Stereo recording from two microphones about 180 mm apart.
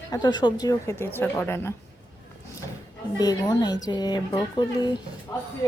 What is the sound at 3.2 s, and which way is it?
A woman's voice, 20° left (ahead or behind).